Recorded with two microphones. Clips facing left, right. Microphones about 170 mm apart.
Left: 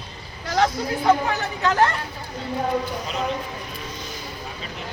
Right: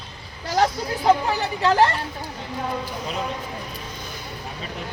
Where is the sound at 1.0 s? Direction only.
30° right (ahead or behind).